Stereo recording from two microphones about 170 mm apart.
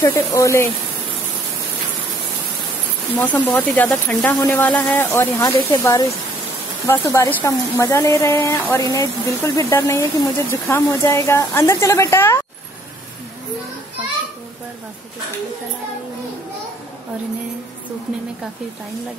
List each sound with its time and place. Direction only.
0.0 s speech: 20° left (ahead or behind)
3.2 s speech: 10° left (ahead or behind)